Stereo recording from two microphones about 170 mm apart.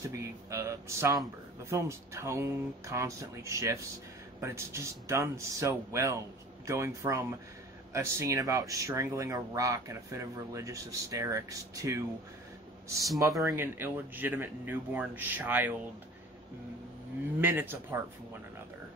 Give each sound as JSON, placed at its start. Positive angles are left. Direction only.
{"t": 0.1, "sound": "speech", "side_deg": -20}
{"t": 13.4, "sound": "speech", "side_deg": -15}
{"t": 17.4, "sound": "speech", "side_deg": -10}